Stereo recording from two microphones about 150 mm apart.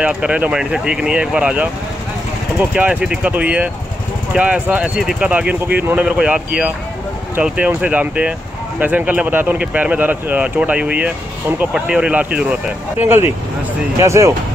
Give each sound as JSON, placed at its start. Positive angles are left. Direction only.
{"t": 0.0, "sound": "speech", "side_deg": -10}
{"t": 2.7, "sound": "speech", "side_deg": -10}